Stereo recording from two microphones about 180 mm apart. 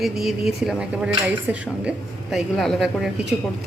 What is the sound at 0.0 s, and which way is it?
Speech, centre (ahead or behind).